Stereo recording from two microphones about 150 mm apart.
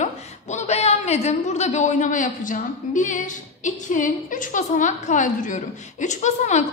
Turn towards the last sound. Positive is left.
turn(degrees=50)  # may be behind; listen again after turning